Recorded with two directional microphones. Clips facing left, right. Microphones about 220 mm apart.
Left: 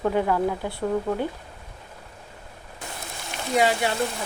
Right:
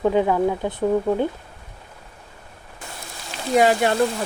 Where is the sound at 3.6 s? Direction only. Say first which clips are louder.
Right 5 dB; 50° right (ahead or behind).